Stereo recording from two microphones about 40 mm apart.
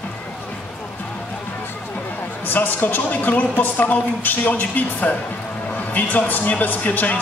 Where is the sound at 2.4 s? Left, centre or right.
Left.